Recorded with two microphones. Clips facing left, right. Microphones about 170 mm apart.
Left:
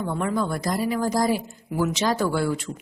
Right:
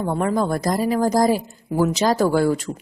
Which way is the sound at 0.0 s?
40° right (ahead or behind).